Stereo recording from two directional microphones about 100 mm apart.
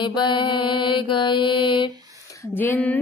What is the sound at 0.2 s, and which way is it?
Mantra, 50° left (ahead or behind).